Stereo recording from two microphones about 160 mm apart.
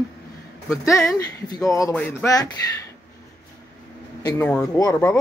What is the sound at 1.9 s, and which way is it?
Speech, 10° left (ahead or behind).